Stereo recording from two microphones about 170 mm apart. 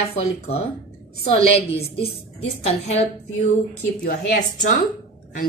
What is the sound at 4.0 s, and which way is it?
Speech, 50° left (ahead or behind).